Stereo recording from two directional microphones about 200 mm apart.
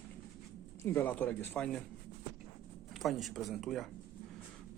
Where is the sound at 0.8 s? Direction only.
10° left (ahead or behind).